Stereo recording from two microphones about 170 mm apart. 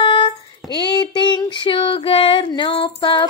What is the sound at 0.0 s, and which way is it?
Child singing, 30° left (ahead or behind).